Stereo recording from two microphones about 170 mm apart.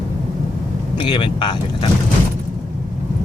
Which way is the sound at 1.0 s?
25° left (ahead or behind).